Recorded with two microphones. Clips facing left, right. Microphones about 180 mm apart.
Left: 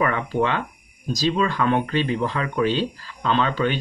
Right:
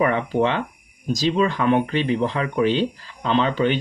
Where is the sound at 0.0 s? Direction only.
20° right (ahead or behind).